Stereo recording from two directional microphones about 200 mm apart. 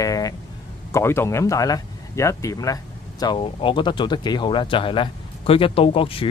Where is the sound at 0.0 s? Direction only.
15° left (ahead or behind).